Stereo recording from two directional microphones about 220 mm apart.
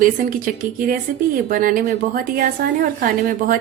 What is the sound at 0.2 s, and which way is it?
A woman's voice, 40° right (ahead or behind).